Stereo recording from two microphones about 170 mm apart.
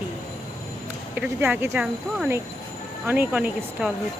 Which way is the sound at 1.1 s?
10° right (ahead or behind).